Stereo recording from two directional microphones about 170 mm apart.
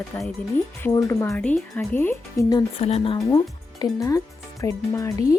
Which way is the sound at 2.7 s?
35° left (ahead or behind).